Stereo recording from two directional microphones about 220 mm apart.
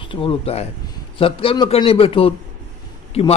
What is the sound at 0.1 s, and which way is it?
A man's voice, 25° left (ahead or behind).